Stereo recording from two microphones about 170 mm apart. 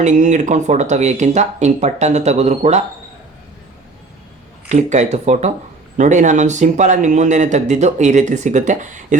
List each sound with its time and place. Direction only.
0.0 s speech: 45° right (ahead or behind)
4.7 s speech: 45° right (ahead or behind)